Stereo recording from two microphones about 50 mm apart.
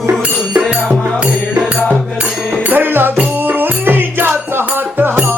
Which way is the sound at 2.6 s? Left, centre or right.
Right.